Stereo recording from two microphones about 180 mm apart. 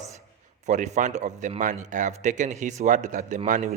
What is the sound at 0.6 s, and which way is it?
A man's voice, 40° right (ahead or behind).